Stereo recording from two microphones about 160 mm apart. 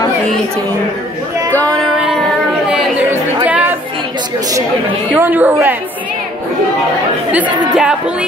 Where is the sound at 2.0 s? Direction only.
Centre (ahead or behind).